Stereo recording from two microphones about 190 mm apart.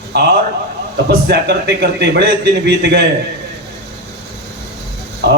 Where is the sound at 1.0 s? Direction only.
60° right (ahead or behind).